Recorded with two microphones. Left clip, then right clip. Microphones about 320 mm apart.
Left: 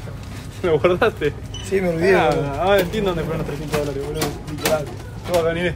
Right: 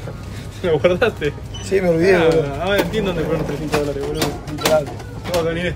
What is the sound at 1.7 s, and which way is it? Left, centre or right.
Speech, centre.